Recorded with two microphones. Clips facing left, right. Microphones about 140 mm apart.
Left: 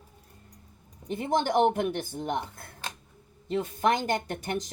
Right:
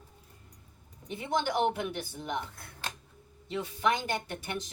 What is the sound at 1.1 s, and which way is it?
Speech, 45° left (ahead or behind).